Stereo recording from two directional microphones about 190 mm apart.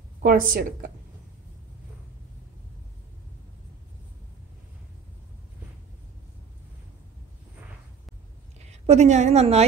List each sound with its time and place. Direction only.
0.2 s a woman's voice: 45° right (ahead or behind)
8.6 s a woman's voice: 35° right (ahead or behind)